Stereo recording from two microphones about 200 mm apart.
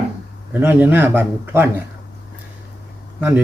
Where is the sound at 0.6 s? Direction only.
10° right (ahead or behind).